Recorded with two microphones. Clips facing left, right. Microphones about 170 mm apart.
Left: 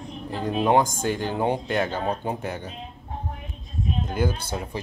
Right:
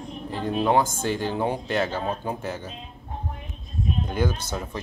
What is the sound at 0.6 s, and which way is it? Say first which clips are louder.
Speech: left 2 dB; 15° left (ahead or behind).